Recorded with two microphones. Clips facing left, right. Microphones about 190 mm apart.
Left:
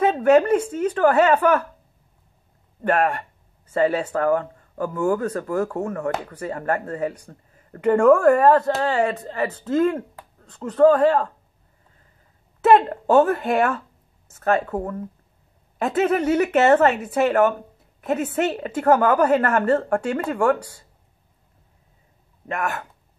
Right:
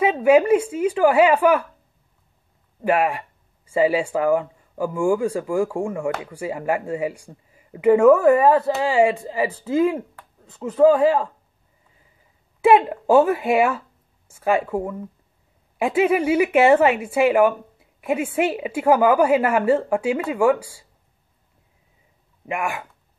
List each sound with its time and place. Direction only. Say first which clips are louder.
0.0 s speech: even; 10° right (ahead or behind)
2.8 s speech: right 1 dB; 5° right (ahead or behind)
12.6 s speech: right 1 dB; 5° right (ahead or behind)
22.5 s speech: right 1 dB; 10° right (ahead or behind)